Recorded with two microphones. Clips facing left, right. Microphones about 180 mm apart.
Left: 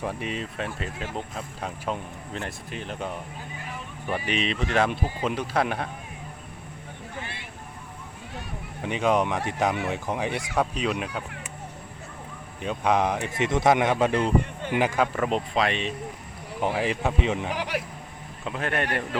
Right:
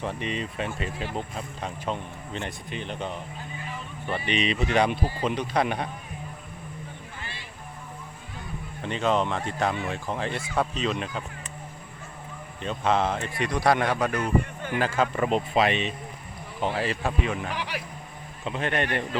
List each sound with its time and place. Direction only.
0.0 s speech: 5° left (ahead or behind)
8.8 s speech: 10° left (ahead or behind)
12.6 s speech: 15° left (ahead or behind)
15.1 s speech: 5° right (ahead or behind)
16.6 s speech: 15° left (ahead or behind)
18.4 s speech: centre (ahead or behind)